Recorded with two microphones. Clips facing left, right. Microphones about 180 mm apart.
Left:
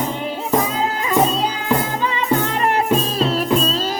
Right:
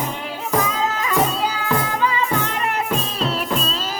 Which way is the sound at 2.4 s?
35° left (ahead or behind).